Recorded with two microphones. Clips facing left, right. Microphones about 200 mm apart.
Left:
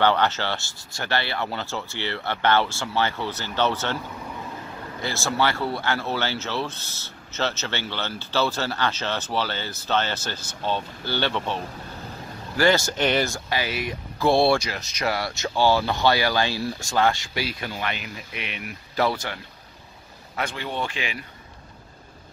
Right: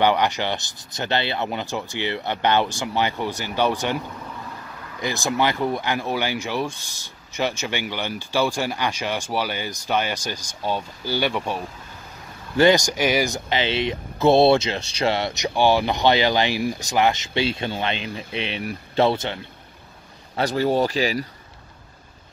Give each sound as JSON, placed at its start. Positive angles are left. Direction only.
{"t": 0.0, "sound": "speech", "side_deg": -15}
{"t": 5.0, "sound": "speech", "side_deg": -15}
{"t": 20.3, "sound": "speech", "side_deg": -40}